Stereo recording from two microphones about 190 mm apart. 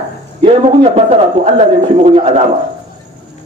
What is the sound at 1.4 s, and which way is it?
A man's voice, 30° right (ahead or behind).